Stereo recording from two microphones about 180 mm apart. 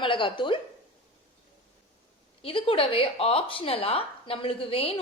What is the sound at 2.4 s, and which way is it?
A woman's voice, 30° left (ahead or behind).